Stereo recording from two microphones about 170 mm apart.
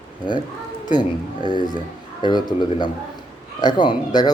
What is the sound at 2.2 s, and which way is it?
Speech, 25° left (ahead or behind).